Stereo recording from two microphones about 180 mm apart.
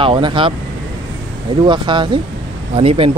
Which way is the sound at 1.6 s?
25° right (ahead or behind).